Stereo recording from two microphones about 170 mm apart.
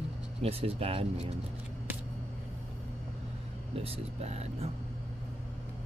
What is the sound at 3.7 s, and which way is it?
Speech, 35° right (ahead or behind).